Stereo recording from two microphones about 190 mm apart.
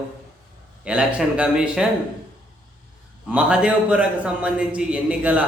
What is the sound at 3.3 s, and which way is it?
A man's voice, 5° right (ahead or behind).